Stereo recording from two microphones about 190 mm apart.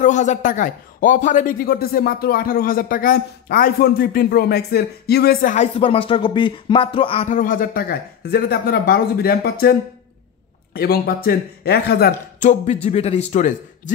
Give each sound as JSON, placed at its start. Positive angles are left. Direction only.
{"t": 0.0, "sound": "speech", "side_deg": 40}
{"t": 5.8, "sound": "speech", "side_deg": 30}
{"t": 7.2, "sound": "speech", "side_deg": 45}
{"t": 12.4, "sound": "a man's voice", "side_deg": 40}